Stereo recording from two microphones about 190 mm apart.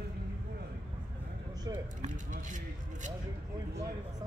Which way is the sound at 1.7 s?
20° right (ahead or behind).